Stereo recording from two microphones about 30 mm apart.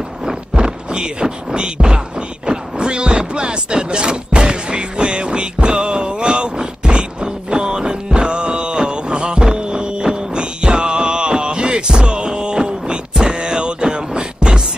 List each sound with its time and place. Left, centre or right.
0.6 s speech: right
2.4 s mechanisms: right
13.2 s music: right